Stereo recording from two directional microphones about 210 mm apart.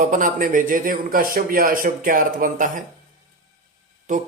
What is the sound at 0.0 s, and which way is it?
Speech, 40° right (ahead or behind).